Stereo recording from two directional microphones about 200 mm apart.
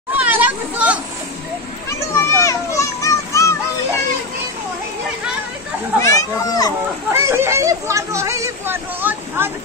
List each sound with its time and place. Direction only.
0.1 s children playing: 10° right (ahead or behind)
1.9 s children playing: 15° left (ahead or behind)
5.9 s a child's voice: 15° left (ahead or behind)
7.1 s a sound: 15° right (ahead or behind)